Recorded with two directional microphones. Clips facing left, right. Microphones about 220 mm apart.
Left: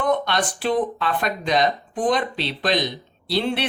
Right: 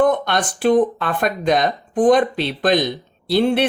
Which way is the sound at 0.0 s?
50° right (ahead or behind).